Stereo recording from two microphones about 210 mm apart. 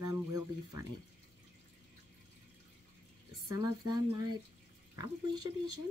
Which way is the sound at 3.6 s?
20° right (ahead or behind).